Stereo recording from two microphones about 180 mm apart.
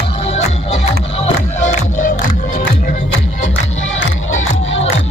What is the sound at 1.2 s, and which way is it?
Music, 40° left (ahead or behind).